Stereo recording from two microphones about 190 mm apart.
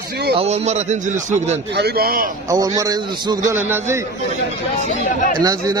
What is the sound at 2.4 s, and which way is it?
A man's voice, 20° right (ahead or behind).